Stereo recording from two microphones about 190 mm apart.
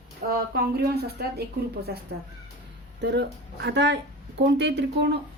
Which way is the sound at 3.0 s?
60° right (ahead or behind).